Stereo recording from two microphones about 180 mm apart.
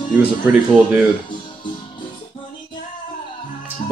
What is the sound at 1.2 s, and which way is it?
Music, 25° left (ahead or behind).